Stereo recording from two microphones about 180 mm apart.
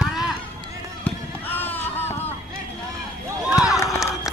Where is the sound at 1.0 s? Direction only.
10° left (ahead or behind).